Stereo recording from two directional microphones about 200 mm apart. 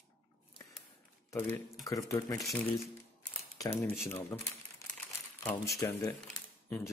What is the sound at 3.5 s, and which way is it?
Speech, 15° left (ahead or behind).